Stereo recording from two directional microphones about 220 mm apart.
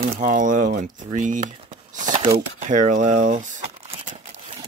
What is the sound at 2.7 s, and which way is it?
Crumpling, 35° right (ahead or behind).